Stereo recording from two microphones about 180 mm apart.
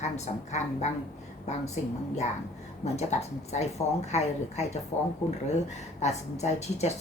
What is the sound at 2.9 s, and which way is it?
A woman's voice, 40° left (ahead or behind).